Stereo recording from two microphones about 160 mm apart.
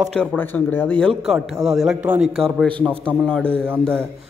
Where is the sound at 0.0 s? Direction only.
5° left (ahead or behind).